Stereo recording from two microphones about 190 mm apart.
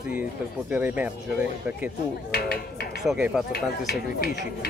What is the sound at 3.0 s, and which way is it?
Dishes, 5° right (ahead or behind).